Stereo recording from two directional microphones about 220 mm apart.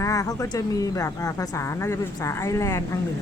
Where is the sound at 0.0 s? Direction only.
15° left (ahead or behind).